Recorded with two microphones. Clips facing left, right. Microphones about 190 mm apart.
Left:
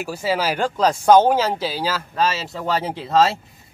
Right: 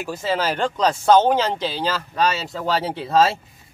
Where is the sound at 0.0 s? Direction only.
10° left (ahead or behind).